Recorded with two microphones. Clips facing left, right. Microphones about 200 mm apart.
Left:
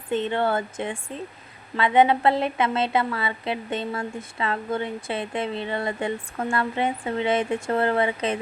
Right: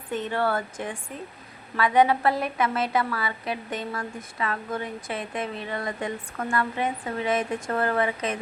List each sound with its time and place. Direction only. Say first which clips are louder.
0.1 s a woman's voice: left 3 dB; 25° left (ahead or behind)